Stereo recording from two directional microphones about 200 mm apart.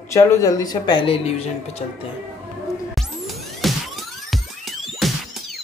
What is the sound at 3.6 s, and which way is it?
Music, centre (ahead or behind).